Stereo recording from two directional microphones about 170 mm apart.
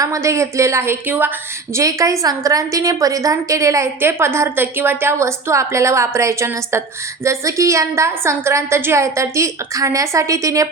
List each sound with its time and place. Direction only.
0.0 s a woman's voice: 20° right (ahead or behind)